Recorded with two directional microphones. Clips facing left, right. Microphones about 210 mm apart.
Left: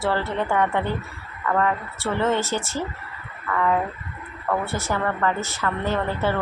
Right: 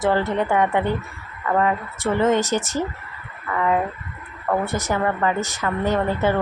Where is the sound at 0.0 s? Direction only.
15° right (ahead or behind).